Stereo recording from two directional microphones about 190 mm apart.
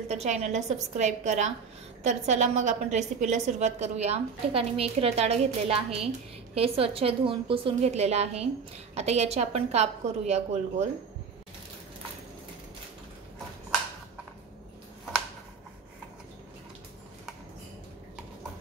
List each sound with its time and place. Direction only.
0.1 s a woman's voice: 35° right (ahead or behind)